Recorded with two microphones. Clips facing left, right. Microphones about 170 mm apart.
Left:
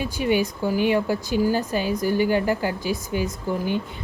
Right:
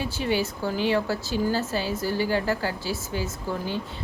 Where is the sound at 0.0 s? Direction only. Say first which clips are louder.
Left 4 dB; 15° left (ahead or behind).